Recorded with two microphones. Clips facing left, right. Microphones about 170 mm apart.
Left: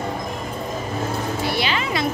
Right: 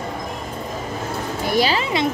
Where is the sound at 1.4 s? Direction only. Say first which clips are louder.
Right 7 dB; 40° right (ahead or behind).